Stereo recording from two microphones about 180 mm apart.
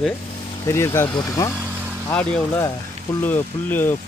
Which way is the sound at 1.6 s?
10° right (ahead or behind).